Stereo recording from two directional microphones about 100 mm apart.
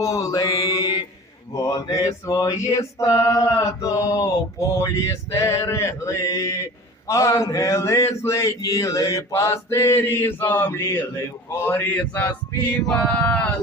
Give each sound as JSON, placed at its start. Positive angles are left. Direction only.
{"t": 0.0, "sound": "male singing", "side_deg": 35}
{"t": 0.6, "sound": "mantra", "side_deg": 35}
{"t": 1.5, "sound": "male singing", "side_deg": 35}
{"t": 7.1, "sound": "speech", "side_deg": 30}
{"t": 12.6, "sound": "male singing", "side_deg": 15}